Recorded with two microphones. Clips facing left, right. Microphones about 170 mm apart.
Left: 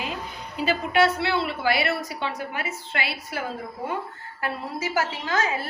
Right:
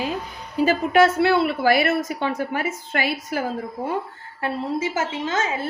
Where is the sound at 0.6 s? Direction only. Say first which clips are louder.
Right 5 dB; 45° right (ahead or behind).